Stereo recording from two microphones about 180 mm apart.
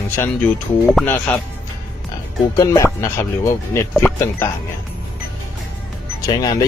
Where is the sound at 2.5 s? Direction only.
20° left (ahead or behind).